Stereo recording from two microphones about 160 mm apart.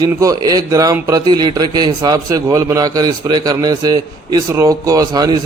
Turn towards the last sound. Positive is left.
turn(degrees=-25)  # may be behind; listen again after turning